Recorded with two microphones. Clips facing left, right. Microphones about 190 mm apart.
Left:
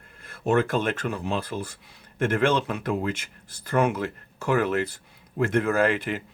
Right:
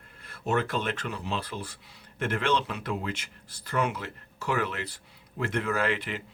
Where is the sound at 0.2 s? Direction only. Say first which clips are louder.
Left 6 dB; 50° left (ahead or behind).